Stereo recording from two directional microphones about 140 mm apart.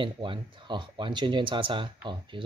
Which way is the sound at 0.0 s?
35° right (ahead or behind).